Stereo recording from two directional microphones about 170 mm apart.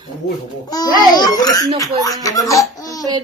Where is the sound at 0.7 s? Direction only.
25° left (ahead or behind).